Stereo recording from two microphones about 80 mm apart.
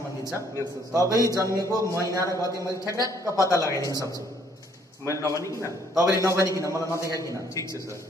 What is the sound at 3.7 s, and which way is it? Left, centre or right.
Speech, left.